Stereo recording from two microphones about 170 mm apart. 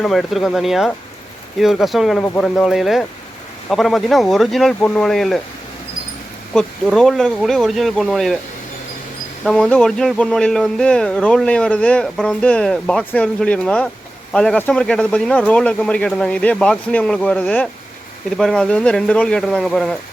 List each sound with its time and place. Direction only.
0.0 s speech: centre (ahead or behind)
6.5 s speech: 5° left (ahead or behind)
9.4 s speech: 5° left (ahead or behind)